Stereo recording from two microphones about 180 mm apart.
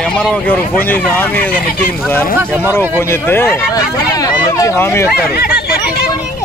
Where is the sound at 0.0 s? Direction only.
5° left (ahead or behind).